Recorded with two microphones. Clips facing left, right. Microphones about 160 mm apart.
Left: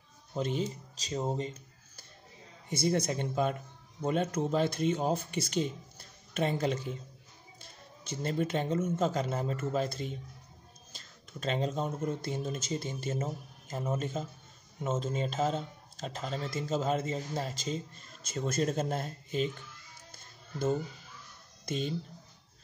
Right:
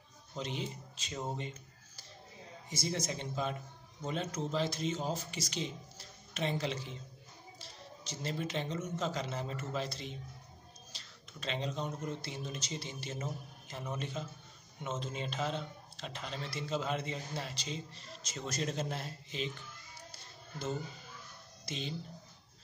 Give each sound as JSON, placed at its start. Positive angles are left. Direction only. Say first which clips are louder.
{"t": 0.3, "sound": "speech", "louder": "left 7 dB", "side_deg": 50}
{"t": 2.7, "sound": "speech", "louder": "left 8 dB", "side_deg": 60}
{"t": 20.1, "sound": "music", "louder": "left 3 dB", "side_deg": 50}
{"t": 21.6, "sound": "speech", "louder": "left 7 dB", "side_deg": 50}